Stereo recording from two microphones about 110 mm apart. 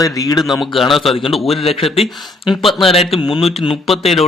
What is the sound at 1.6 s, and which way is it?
Speech, 55° left (ahead or behind).